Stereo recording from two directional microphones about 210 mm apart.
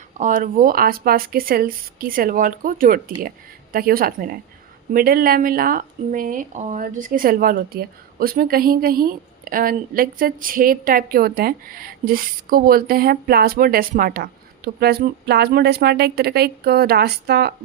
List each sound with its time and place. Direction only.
0.2 s speech: 40° right (ahead or behind)